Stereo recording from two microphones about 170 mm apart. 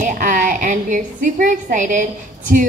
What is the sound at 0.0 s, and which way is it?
A woman's voice, 50° right (ahead or behind).